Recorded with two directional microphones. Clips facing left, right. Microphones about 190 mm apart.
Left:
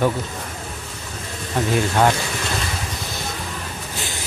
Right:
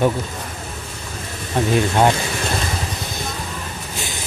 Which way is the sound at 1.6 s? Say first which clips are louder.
Right 2 dB; 25° right (ahead or behind).